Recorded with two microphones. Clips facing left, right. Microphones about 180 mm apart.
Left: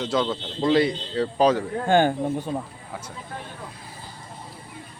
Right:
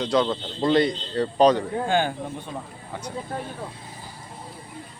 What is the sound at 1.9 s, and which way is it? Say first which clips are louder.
Speech: left 7 dB; 45° left (ahead or behind).